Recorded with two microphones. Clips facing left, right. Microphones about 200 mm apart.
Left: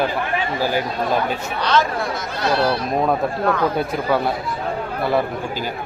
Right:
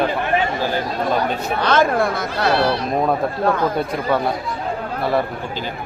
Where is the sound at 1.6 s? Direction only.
50° right (ahead or behind).